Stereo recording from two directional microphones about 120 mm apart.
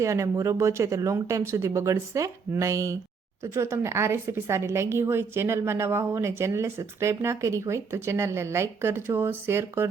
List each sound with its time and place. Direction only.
0.0 s a woman's voice: 25° right (ahead or behind)